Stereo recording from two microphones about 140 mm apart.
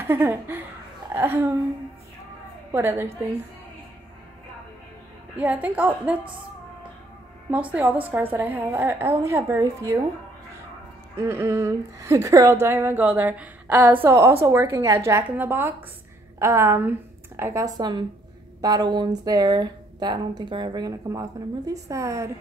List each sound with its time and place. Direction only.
0.0 s a sound: 15° right (ahead or behind)
1.1 s speech: 15° right (ahead or behind)
2.7 s speech: 15° right (ahead or behind)
5.4 s speech: 10° right (ahead or behind)
7.5 s speech: 10° right (ahead or behind)
11.1 s speech: 15° right (ahead or behind)